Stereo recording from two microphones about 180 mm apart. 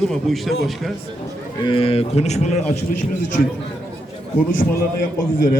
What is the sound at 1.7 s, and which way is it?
Speech, 30° left (ahead or behind).